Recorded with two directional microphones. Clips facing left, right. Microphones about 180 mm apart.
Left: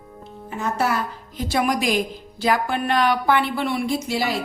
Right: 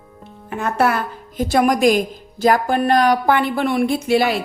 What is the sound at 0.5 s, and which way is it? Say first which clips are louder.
A woman's voice: right 4 dB; 60° right (ahead or behind).